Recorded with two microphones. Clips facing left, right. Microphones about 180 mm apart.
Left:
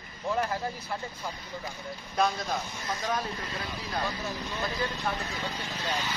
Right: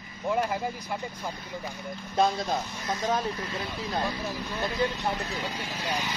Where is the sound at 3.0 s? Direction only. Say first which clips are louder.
Right 4 dB; 25° right (ahead or behind).